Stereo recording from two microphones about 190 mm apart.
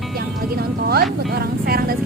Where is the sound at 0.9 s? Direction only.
55° right (ahead or behind).